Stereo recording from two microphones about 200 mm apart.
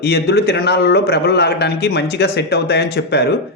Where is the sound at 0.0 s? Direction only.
55° left (ahead or behind).